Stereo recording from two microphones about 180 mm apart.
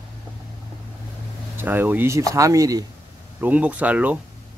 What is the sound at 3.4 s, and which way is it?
Speech, 10° right (ahead or behind).